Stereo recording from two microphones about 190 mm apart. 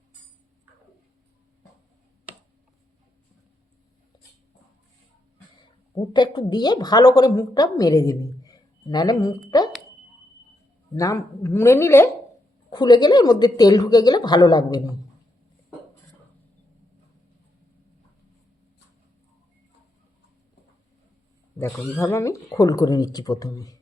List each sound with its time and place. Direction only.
6.0 s a woman's voice: 25° left (ahead or behind)
10.9 s a woman's voice: 15° left (ahead or behind)
21.8 s a woman's voice: 15° left (ahead or behind)